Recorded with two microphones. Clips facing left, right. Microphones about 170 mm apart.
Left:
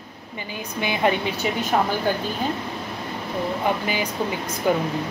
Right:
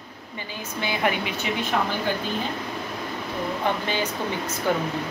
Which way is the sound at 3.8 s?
10° left (ahead or behind).